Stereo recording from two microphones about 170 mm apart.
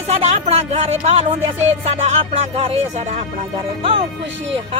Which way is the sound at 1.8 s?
35° right (ahead or behind).